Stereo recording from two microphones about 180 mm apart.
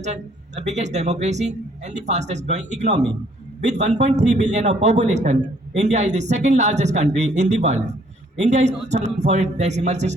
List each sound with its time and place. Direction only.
0.0 s a man's voice: 40° right (ahead or behind)